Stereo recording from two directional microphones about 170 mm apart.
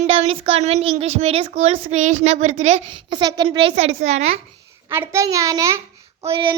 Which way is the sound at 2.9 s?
30° right (ahead or behind).